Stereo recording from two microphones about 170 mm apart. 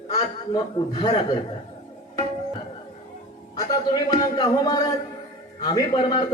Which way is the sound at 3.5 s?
20° left (ahead or behind).